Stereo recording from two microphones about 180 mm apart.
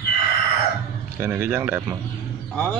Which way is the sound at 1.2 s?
10° right (ahead or behind).